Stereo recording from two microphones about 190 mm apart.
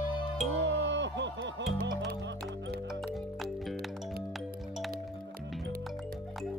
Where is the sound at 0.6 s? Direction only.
65° right (ahead or behind).